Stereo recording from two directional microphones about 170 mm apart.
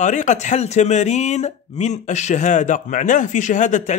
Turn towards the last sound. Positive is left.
turn(degrees=45)  # may be behind; listen again after turning